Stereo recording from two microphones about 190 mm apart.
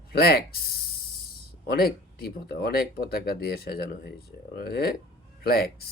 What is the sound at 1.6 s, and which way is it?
Speech, 55° left (ahead or behind).